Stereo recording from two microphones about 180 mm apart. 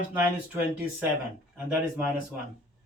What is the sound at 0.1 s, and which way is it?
Speech, 10° right (ahead or behind).